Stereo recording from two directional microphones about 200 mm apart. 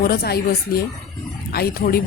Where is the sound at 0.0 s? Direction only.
50° left (ahead or behind).